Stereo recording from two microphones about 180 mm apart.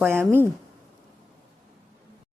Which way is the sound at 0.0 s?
10° right (ahead or behind).